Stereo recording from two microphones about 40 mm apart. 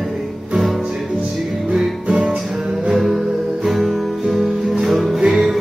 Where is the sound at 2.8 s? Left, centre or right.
Centre.